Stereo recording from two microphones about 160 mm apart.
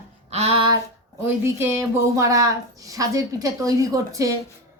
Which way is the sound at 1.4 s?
15° right (ahead or behind).